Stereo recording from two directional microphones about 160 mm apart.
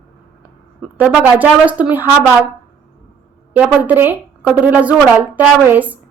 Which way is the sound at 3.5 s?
10° right (ahead or behind).